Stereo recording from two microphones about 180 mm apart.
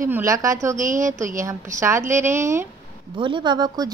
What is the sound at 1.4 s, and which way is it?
A woman's voice, 15° right (ahead or behind).